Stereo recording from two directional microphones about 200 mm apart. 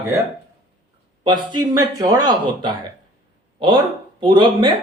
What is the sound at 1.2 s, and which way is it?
Speech, 20° right (ahead or behind).